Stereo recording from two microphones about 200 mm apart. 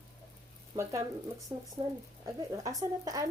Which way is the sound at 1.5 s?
20° right (ahead or behind).